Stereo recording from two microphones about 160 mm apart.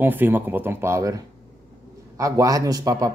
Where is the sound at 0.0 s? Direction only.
10° right (ahead or behind).